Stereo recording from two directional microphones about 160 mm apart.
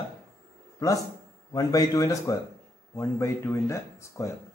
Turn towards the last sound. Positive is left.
turn(degrees=20)  # may be behind; listen again after turning